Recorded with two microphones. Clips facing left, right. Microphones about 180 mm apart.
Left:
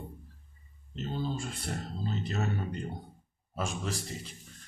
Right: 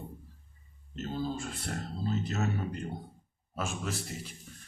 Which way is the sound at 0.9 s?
Centre (ahead or behind).